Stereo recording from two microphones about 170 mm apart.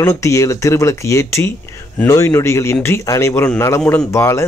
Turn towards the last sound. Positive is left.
turn(degrees=15)  # may be behind; listen again after turning